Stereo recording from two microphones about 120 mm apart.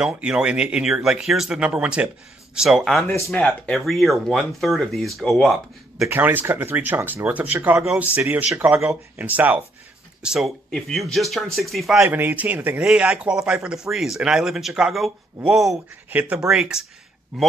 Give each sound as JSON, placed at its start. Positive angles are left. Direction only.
{"t": 0.0, "sound": "speech", "side_deg": -10}
{"t": 6.0, "sound": "speech", "side_deg": -15}
{"t": 12.1, "sound": "speech", "side_deg": -15}
{"t": 16.1, "sound": "speech", "side_deg": -15}